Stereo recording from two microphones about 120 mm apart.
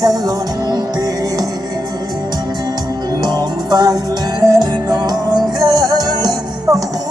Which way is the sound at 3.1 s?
35° right (ahead or behind).